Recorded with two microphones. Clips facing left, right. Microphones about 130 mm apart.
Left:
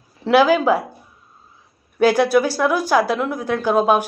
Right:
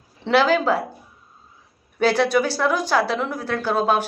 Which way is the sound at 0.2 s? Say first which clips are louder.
Left 4 dB; 10° left (ahead or behind).